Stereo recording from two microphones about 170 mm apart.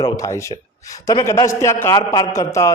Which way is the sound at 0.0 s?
20° left (ahead or behind).